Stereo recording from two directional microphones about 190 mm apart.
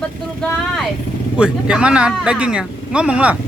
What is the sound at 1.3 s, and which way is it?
Speech, 5° right (ahead or behind).